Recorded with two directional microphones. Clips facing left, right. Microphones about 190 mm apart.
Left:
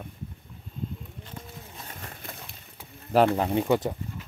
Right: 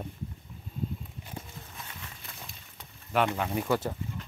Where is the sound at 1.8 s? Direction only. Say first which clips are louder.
Left 5 dB; 45° left (ahead or behind).